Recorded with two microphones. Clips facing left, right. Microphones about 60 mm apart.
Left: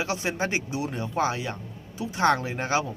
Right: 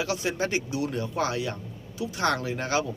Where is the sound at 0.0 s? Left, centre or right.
Left.